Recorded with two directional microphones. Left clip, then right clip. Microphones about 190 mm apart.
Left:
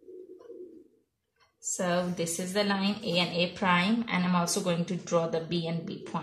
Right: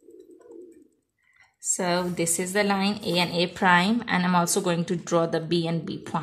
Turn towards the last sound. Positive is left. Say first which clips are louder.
# right 6 dB
turn(degrees=-50)  # may be behind; listen again after turning